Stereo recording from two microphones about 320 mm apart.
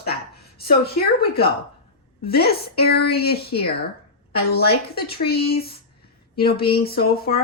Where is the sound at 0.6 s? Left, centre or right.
Left.